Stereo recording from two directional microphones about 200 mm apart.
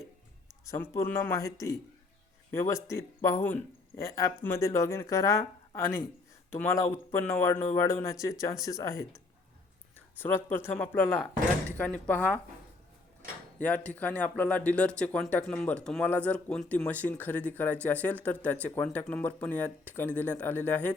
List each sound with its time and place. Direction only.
0.6 s speech: 15° left (ahead or behind)
10.2 s speech: 10° left (ahead or behind)
13.6 s speech: 5° left (ahead or behind)